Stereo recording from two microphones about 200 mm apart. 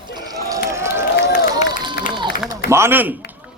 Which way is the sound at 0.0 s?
20° right (ahead or behind).